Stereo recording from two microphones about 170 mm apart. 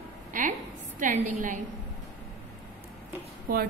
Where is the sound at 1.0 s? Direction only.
50° right (ahead or behind).